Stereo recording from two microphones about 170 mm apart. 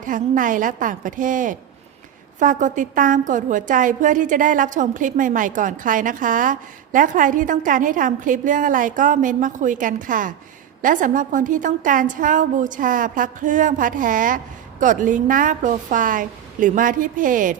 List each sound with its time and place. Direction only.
0.0 s a woman's voice: 50° right (ahead or behind)